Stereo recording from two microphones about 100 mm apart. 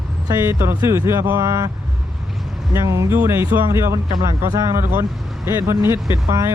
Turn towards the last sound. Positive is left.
turn(degrees=-30)  # may be behind; listen again after turning